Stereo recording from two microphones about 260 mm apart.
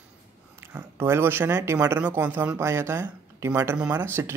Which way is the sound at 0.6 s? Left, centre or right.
Centre.